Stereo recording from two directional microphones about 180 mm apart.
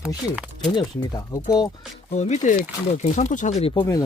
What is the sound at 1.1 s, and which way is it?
Speech, 20° left (ahead or behind).